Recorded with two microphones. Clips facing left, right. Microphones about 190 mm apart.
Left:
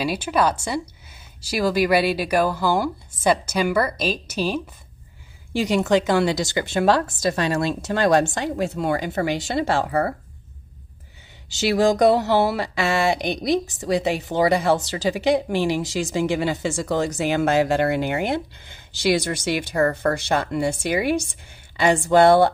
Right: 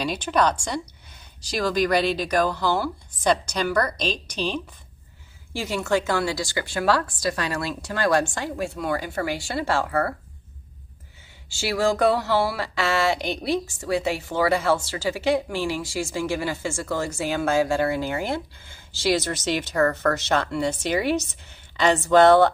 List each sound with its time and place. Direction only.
0.0 s speech: 5° left (ahead or behind)
5.5 s speech: 20° left (ahead or behind)
11.4 s speech: 20° left (ahead or behind)